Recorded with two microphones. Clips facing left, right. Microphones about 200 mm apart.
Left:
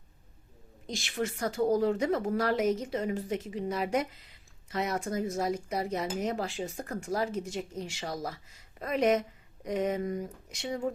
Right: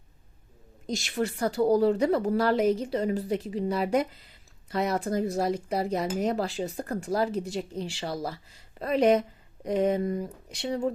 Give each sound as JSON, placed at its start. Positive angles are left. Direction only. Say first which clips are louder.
{"t": 0.9, "sound": "a woman's voice", "louder": "right 4 dB", "side_deg": -40}